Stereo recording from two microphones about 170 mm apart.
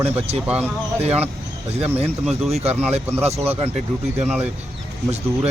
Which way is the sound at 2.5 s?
40° right (ahead or behind).